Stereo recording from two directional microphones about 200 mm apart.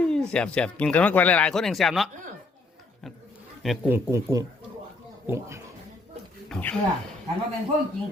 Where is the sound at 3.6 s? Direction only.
Centre (ahead or behind).